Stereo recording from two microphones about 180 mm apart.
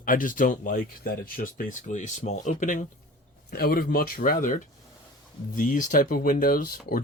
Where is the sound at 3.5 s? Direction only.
55° left (ahead or behind).